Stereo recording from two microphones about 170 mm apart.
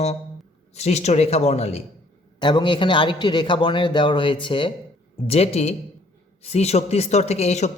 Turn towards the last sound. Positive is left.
turn(degrees=40)  # may be behind; listen again after turning